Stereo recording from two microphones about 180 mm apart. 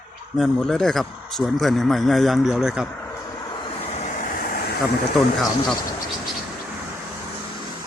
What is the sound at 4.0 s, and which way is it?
Waves, 50° left (ahead or behind).